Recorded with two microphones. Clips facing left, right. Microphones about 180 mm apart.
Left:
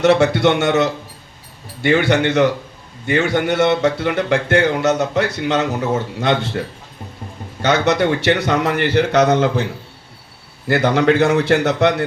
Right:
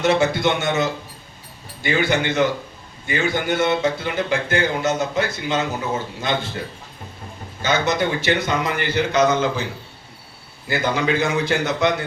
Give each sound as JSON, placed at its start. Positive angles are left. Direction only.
{"t": 0.0, "sound": "speech", "side_deg": 75}
{"t": 7.6, "sound": "speech", "side_deg": 75}
{"t": 10.7, "sound": "speech", "side_deg": 75}